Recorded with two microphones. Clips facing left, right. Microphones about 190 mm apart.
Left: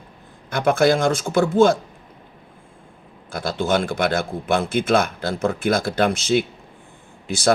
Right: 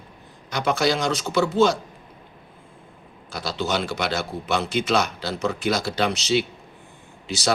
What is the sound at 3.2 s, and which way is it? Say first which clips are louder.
A man's voice: left 4 dB; 50° left (ahead or behind).